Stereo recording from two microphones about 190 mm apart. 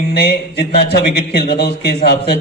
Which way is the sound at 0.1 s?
60° left (ahead or behind).